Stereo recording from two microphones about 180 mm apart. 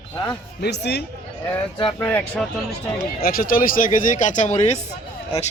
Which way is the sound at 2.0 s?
10° left (ahead or behind).